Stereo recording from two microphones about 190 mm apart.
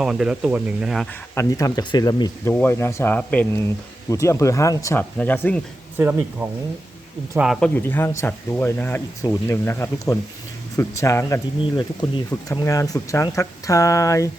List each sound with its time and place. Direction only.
0.0 s speech: 5° right (ahead or behind)
1.4 s speech: 15° left (ahead or behind)
2.5 s speech: 10° left (ahead or behind)
6.0 s speech: 10° right (ahead or behind)
7.8 s speech: 10° left (ahead or behind)